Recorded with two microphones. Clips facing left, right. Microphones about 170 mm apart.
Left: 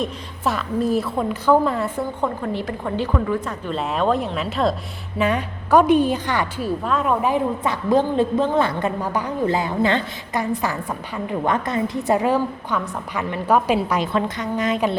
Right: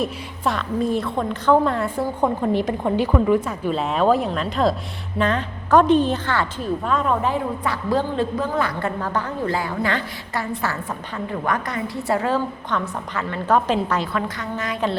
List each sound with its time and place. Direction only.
0.0 s a woman's voice: centre (ahead or behind)
2.2 s a woman's voice: 15° right (ahead or behind)
3.7 s a woman's voice: centre (ahead or behind)
6.8 s a woman's voice: 5° left (ahead or behind); by 8.9 s 25° left (ahead or behind)
9.0 s a woman's voice: 15° left (ahead or behind)
14.1 s a woman's voice: 25° left (ahead or behind)